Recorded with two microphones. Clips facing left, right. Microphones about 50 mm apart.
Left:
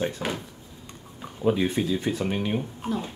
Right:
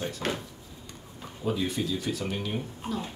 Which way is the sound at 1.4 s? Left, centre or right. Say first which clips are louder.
Left 6 dB; left.